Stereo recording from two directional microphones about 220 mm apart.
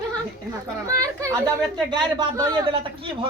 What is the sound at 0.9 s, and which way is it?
A child's voice, 15° right (ahead or behind).